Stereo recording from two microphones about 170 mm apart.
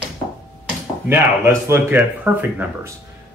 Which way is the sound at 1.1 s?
15° right (ahead or behind).